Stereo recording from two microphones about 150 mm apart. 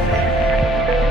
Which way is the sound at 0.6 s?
Centre (ahead or behind).